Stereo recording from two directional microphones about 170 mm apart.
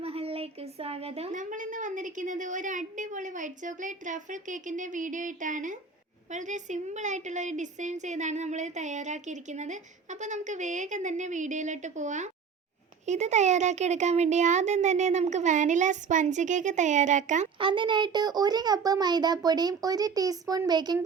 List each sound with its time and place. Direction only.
0.0 s a woman's voice: 35° right (ahead or behind)
17.6 s a child's voice: 30° right (ahead or behind)